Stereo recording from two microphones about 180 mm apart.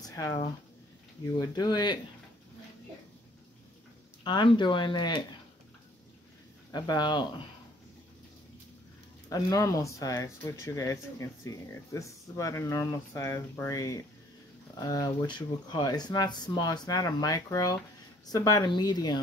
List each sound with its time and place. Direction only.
0.0 s a sound: 20° left (ahead or behind)
1.2 s speech: 20° left (ahead or behind)
4.2 s speech: 25° left (ahead or behind)
6.7 s speech: 25° left (ahead or behind)
9.3 s speech: 20° left (ahead or behind)